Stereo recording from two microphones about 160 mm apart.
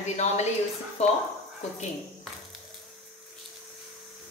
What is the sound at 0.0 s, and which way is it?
A woman's voice, 45° left (ahead or behind).